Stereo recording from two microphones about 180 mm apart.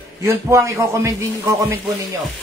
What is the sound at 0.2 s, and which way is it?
A man's voice, 15° right (ahead or behind).